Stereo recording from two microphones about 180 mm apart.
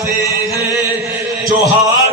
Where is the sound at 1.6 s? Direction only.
15° right (ahead or behind).